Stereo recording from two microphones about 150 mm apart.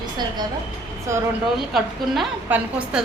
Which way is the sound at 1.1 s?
20° right (ahead or behind).